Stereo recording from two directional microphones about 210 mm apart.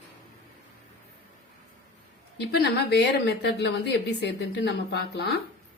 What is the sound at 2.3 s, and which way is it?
Speech, 50° left (ahead or behind).